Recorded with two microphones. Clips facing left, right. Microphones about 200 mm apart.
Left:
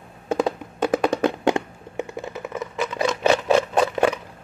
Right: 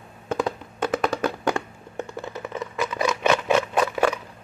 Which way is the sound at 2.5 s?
5° left (ahead or behind).